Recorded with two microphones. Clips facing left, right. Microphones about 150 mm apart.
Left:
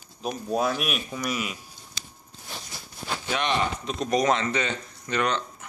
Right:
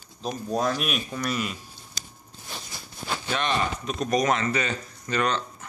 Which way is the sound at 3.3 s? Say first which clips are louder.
Left 1 dB; 20° left (ahead or behind).